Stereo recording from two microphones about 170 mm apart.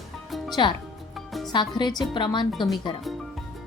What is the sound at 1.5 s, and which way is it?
Speech, 25° left (ahead or behind).